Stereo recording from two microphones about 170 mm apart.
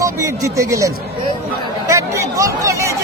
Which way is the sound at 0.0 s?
20° right (ahead or behind).